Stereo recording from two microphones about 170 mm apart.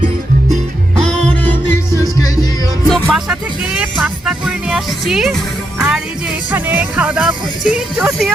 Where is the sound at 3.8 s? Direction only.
5° right (ahead or behind).